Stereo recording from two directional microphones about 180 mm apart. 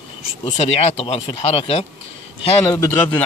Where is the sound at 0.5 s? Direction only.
35° left (ahead or behind).